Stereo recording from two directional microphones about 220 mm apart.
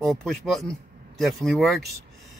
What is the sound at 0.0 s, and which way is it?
Speech, centre (ahead or behind).